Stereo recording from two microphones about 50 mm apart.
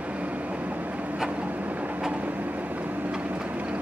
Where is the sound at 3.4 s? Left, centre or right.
Right.